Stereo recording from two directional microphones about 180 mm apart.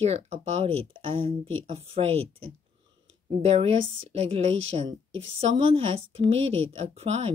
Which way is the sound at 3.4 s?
35° right (ahead or behind).